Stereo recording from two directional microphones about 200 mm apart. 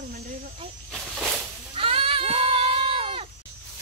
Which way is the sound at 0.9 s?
Centre (ahead or behind).